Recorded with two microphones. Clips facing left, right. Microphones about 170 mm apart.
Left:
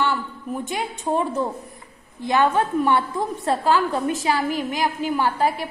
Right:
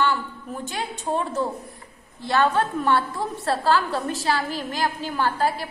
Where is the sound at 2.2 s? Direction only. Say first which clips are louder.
Left 2 dB; 15° left (ahead or behind).